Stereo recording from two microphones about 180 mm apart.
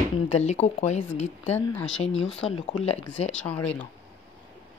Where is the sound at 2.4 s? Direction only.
35° left (ahead or behind).